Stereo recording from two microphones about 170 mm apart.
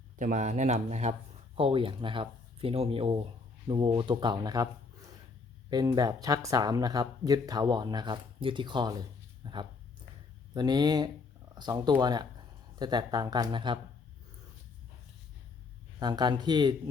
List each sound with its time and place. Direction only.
0.2 s speech: 50° right (ahead or behind)
1.5 s speech: 30° right (ahead or behind)
16.0 s speech: 25° right (ahead or behind)